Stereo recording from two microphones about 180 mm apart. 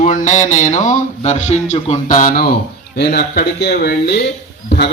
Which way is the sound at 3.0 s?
65° left (ahead or behind).